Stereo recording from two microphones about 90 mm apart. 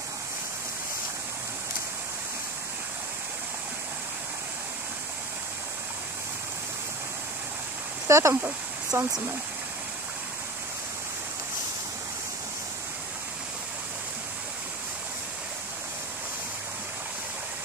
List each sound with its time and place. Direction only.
8.1 s speech: 35° right (ahead or behind)